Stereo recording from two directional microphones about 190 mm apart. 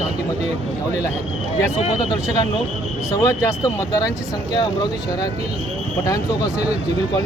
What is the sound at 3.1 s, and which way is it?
Speech, 15° left (ahead or behind).